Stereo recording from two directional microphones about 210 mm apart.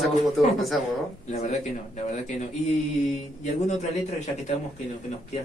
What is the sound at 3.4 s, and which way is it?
Speech, 35° left (ahead or behind).